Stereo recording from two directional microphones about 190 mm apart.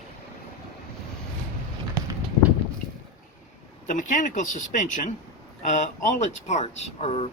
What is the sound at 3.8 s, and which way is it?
Speech, 40° left (ahead or behind).